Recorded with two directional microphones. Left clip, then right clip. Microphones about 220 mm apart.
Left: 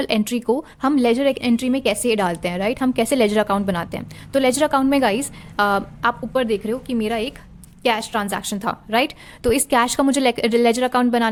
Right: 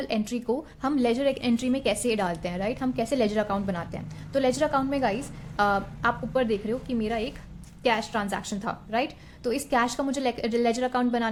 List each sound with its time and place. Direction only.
0.0 s a woman's voice: 40° left (ahead or behind)